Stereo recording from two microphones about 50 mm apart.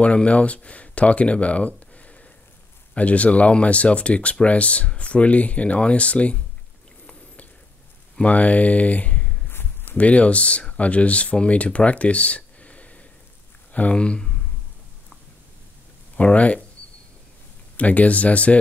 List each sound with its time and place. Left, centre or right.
0.0 s speech: left
8.2 s speech: left
16.2 s speech: left
17.7 s speech: left